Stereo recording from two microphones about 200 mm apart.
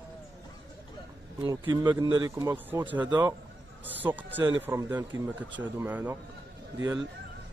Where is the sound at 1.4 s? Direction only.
20° right (ahead or behind).